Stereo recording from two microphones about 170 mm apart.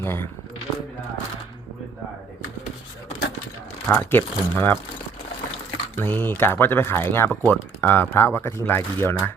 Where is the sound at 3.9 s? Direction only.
10° left (ahead or behind).